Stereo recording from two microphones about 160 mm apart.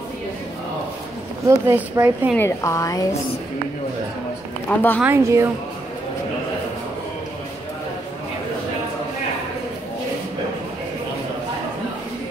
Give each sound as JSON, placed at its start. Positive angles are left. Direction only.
{"t": 1.5, "sound": "speech", "side_deg": -15}
{"t": 2.3, "sound": "a woman's voice", "side_deg": 15}
{"t": 4.6, "sound": "a woman's voice", "side_deg": 10}
{"t": 5.0, "sound": "speech", "side_deg": -15}